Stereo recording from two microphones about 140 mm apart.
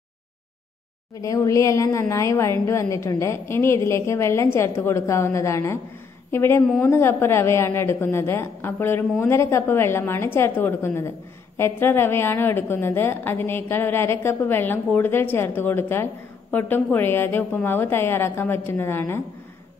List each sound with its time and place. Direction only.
1.2 s a woman's voice: 25° left (ahead or behind)